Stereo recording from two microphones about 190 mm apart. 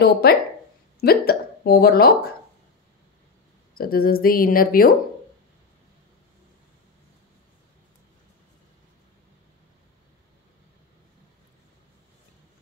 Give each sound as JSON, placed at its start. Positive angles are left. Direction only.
{"t": 0.0, "sound": "speech", "side_deg": 55}
{"t": 3.7, "sound": "speech", "side_deg": 50}